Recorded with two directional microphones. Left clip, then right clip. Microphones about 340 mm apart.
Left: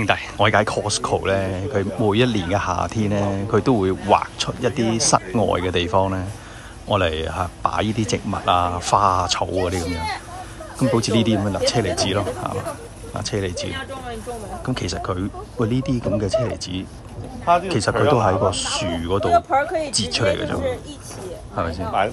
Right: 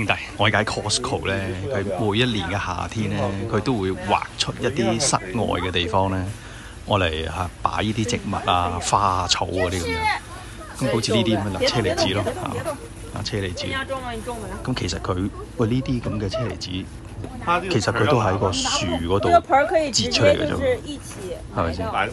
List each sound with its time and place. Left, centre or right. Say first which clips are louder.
0.0 s speech: left 3 dB; centre
14.7 s speech: left 1 dB; centre
19.3 s speech: right 2 dB; right
20.0 s speech: right 2 dB; centre
21.5 s speech: even; centre